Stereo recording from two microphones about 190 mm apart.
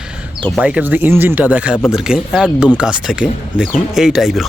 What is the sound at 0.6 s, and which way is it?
Speech, 5° right (ahead or behind).